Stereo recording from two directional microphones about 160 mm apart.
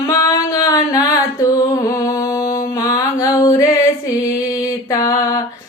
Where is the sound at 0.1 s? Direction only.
20° left (ahead or behind).